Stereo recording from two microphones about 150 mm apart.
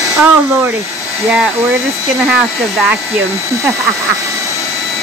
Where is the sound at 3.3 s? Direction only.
20° right (ahead or behind).